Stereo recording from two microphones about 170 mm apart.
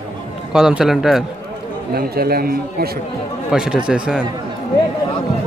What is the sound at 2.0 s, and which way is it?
Speech, 65° right (ahead or behind).